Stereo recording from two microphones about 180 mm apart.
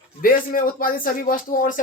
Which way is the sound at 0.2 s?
50° left (ahead or behind).